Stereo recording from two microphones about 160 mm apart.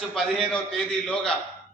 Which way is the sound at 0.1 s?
Centre (ahead or behind).